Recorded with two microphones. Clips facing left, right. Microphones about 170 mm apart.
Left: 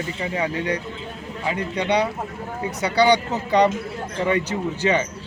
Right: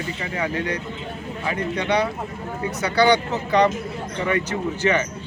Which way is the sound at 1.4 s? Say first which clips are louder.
Left 1 dB; 15° left (ahead or behind).